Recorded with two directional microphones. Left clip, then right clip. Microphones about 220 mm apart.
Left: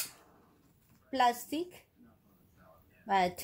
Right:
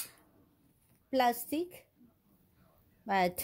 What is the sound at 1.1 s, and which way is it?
Speech, 55° right (ahead or behind).